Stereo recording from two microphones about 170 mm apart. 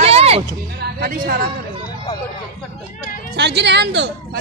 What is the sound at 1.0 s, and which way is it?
Speech, 60° right (ahead or behind).